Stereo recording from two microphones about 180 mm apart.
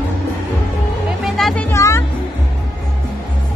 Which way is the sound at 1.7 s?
15° left (ahead or behind).